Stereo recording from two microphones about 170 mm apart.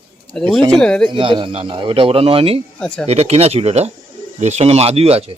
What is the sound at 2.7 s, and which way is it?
Speech, 5° left (ahead or behind).